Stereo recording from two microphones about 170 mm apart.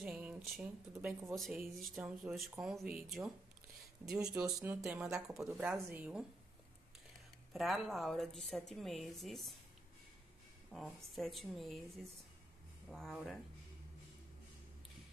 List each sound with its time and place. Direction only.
0.0 s a sound: 5° right (ahead or behind)
1.3 s a woman's voice: centre (ahead or behind)
5.1 s speech: 15° right (ahead or behind)
5.5 s speech: 5° right (ahead or behind)
7.5 s a woman's voice: centre (ahead or behind)
10.7 s a woman's voice: centre (ahead or behind)